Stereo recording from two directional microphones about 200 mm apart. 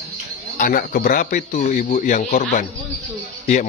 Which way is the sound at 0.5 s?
45° left (ahead or behind).